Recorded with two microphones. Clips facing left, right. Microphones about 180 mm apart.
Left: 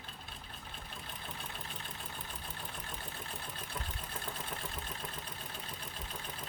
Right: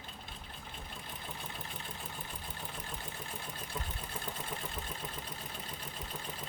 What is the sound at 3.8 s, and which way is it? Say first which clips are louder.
Vehicle: right 2 dB; 10° right (ahead or behind).